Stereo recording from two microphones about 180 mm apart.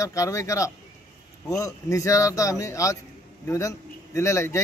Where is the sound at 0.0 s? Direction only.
15° left (ahead or behind).